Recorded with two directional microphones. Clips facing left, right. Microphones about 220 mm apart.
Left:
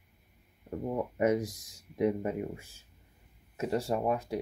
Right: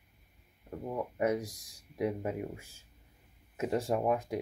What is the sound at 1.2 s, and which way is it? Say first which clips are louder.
Speech: left 3 dB; 5° left (ahead or behind).